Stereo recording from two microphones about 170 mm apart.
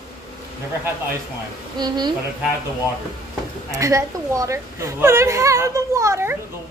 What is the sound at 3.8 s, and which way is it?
A woman's voice, 20° right (ahead or behind).